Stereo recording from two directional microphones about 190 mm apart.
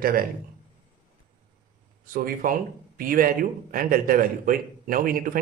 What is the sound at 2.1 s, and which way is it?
A man's voice, 45° right (ahead or behind).